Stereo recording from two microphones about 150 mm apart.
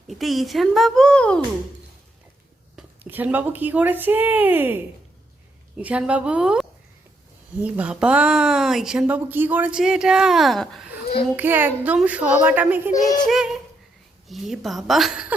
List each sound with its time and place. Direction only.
0.1 s speech: centre (ahead or behind)
2.7 s speech: 10° right (ahead or behind)
12.9 s music: 25° left (ahead or behind)
13.2 s speech: 5° right (ahead or behind)